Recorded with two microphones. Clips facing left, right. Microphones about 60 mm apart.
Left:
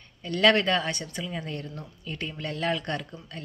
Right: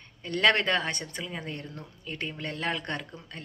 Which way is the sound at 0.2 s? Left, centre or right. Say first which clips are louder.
Left 2 dB; right.